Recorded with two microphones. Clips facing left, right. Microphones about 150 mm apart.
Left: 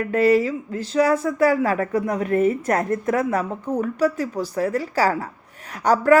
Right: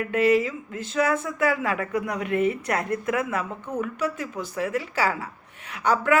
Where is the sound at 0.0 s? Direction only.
35° left (ahead or behind).